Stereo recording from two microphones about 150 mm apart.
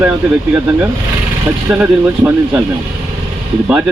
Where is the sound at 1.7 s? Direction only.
10° right (ahead or behind).